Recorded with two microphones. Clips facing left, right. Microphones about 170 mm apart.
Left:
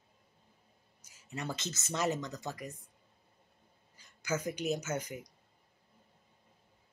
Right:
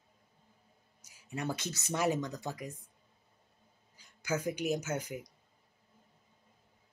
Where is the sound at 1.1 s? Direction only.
15° right (ahead or behind).